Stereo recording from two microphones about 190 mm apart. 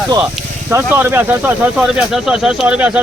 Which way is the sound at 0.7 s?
10° right (ahead or behind).